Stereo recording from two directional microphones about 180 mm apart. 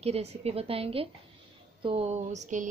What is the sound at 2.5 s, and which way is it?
Speech, 45° right (ahead or behind).